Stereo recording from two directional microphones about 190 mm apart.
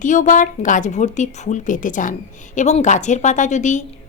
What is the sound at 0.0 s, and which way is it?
A woman's voice, 40° left (ahead or behind).